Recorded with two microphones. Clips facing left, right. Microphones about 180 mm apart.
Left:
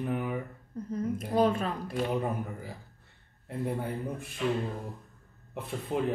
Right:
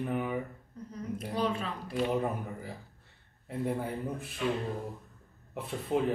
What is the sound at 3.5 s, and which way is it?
Speech, centre (ahead or behind).